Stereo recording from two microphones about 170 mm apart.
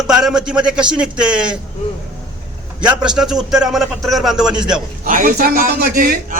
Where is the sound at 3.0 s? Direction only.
5° right (ahead or behind).